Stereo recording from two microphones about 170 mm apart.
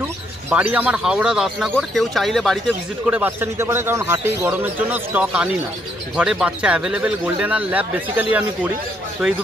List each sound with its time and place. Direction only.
0.0 s speech: 10° right (ahead or behind)
3.1 s a man's voice: 10° right (ahead or behind)